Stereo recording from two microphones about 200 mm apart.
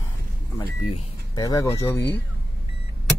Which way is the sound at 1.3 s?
20° left (ahead or behind).